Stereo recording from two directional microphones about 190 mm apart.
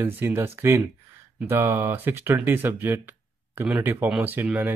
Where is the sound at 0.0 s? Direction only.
10° right (ahead or behind).